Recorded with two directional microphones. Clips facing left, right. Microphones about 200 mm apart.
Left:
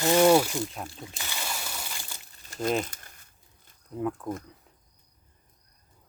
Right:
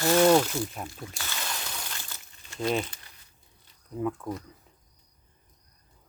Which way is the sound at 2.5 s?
40° left (ahead or behind).